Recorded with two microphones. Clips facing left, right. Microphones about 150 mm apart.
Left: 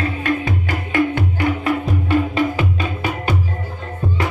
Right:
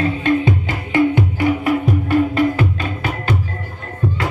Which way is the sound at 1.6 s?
Centre (ahead or behind).